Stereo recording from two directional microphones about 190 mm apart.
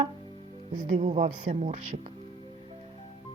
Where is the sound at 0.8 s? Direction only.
45° right (ahead or behind).